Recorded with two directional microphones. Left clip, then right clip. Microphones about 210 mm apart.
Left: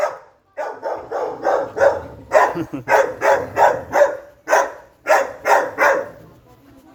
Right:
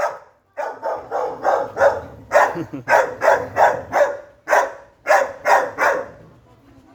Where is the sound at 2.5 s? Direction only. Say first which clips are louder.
Left 2 dB; 10° right (ahead or behind).